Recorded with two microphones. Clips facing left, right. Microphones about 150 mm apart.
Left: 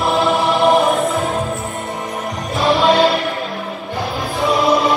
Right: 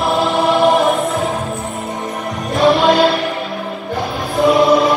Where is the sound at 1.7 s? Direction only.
Centre (ahead or behind).